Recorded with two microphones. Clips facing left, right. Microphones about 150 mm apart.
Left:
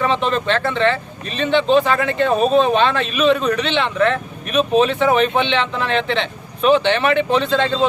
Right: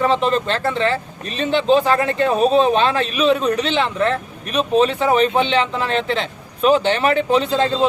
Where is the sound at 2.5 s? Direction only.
35° right (ahead or behind).